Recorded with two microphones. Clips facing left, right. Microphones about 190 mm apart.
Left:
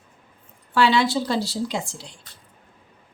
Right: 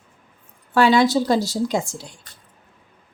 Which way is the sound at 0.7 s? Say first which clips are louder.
Right 4 dB; 45° right (ahead or behind).